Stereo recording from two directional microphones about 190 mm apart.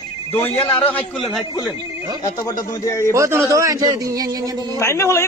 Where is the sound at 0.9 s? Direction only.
5° left (ahead or behind).